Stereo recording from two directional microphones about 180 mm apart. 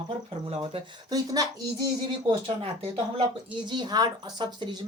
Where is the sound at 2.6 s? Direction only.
30° right (ahead or behind).